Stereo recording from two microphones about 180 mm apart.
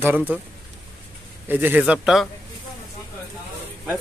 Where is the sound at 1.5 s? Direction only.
10° right (ahead or behind).